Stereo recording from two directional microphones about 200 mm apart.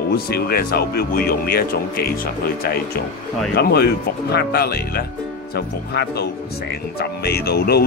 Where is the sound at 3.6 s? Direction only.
55° left (ahead or behind).